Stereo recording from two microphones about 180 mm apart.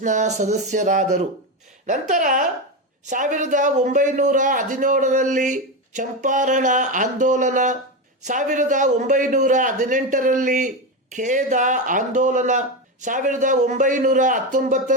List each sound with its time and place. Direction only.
0.0 s a man's voice: 40° right (ahead or behind)